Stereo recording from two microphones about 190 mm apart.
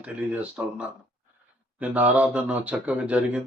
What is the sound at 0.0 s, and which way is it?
Speech, 5° right (ahead or behind).